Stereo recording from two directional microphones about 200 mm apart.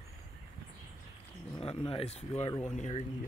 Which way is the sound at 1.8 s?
25° left (ahead or behind).